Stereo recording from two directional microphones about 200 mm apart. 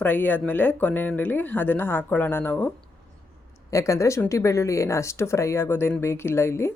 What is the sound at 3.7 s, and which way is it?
Speech, 15° left (ahead or behind).